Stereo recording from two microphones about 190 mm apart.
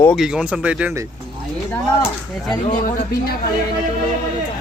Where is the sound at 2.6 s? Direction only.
45° left (ahead or behind).